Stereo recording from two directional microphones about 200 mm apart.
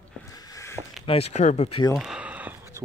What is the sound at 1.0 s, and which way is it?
Speech, 30° left (ahead or behind).